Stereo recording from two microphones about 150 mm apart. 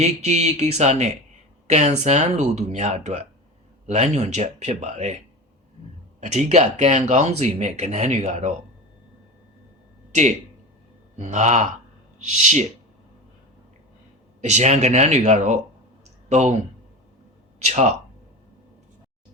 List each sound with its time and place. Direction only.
0.0 s speech: 45° right (ahead or behind)
6.1 s speech: 50° right (ahead or behind)
10.1 s speech: 50° right (ahead or behind)
14.4 s speech: 50° right (ahead or behind)
17.6 s speech: 50° right (ahead or behind)